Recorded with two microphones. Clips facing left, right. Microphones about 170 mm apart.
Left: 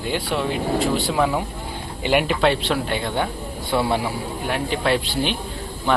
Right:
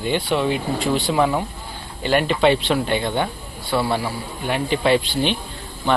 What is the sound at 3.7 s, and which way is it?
Speech, 20° left (ahead or behind).